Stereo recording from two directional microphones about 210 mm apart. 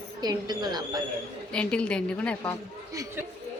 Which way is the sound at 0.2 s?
20° right (ahead or behind).